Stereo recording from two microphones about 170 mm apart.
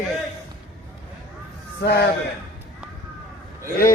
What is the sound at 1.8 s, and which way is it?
Speech, 70° left (ahead or behind).